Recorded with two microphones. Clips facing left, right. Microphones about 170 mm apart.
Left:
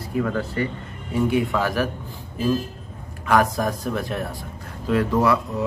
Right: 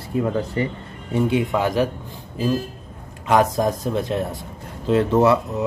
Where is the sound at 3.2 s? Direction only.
20° right (ahead or behind).